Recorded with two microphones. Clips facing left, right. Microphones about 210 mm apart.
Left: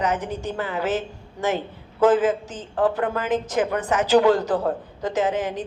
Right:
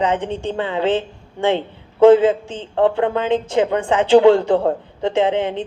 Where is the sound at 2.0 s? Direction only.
25° right (ahead or behind).